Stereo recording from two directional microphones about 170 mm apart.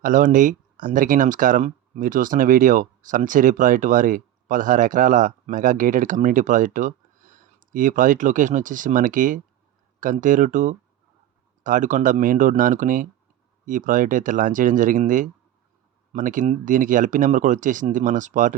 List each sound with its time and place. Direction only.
0.0 s speech: 50° right (ahead or behind)